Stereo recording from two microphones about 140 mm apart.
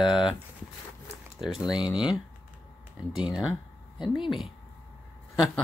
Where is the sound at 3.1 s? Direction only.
5° right (ahead or behind).